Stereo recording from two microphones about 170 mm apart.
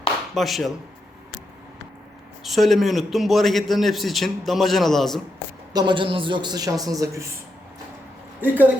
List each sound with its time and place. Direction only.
0.3 s a man's voice: centre (ahead or behind)
2.4 s a man's voice: centre (ahead or behind)
5.7 s a man's voice: 25° right (ahead or behind)
8.4 s speech: 10° right (ahead or behind)